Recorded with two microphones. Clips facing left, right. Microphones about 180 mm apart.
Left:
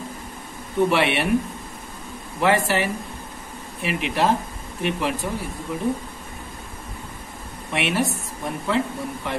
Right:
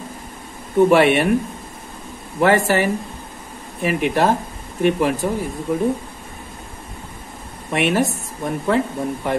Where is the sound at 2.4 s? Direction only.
45° right (ahead or behind).